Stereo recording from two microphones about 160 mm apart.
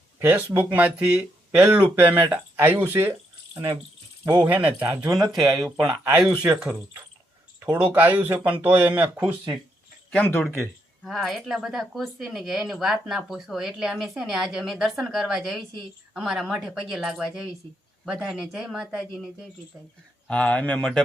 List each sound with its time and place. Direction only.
0.2 s speech: 10° right (ahead or behind)
5.8 s speech: 20° right (ahead or behind)
7.6 s speech: 15° right (ahead or behind)
10.1 s speech: 10° left (ahead or behind)
20.2 s speech: 5° left (ahead or behind)